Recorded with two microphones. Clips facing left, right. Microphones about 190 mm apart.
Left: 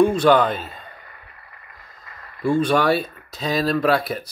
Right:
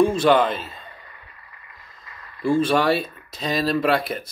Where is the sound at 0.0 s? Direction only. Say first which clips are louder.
Left 1 dB; centre (ahead or behind).